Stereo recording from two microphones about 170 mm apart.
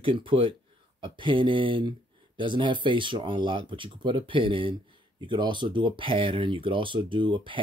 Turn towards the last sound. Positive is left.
turn(degrees=-30)  # may be behind; listen again after turning